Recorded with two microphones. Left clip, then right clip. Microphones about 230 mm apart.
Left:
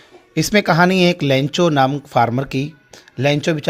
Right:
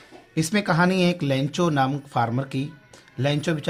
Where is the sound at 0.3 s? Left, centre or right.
Left.